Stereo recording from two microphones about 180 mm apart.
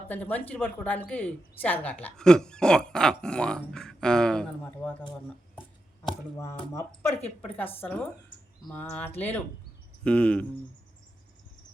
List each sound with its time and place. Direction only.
0.1 s speech: 10° left (ahead or behind)
6.3 s speech: 15° left (ahead or behind)